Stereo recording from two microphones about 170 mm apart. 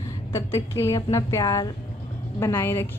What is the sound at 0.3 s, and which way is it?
A woman's voice, 15° left (ahead or behind).